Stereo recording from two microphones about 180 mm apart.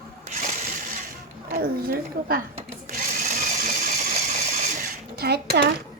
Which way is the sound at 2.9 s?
45° right (ahead or behind).